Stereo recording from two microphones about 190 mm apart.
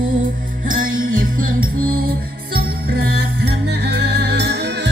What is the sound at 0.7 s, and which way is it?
Music, 45° right (ahead or behind).